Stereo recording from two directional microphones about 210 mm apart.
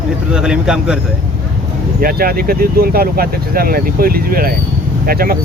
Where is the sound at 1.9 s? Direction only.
45° right (ahead or behind).